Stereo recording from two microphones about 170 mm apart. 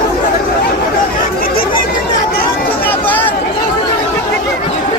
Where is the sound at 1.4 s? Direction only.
60° left (ahead or behind).